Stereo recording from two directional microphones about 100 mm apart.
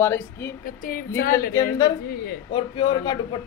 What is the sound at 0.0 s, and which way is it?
A woman's voice, 25° left (ahead or behind).